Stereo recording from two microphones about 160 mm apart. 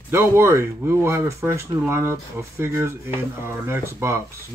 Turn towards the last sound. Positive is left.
turn(degrees=-15)  # may be behind; listen again after turning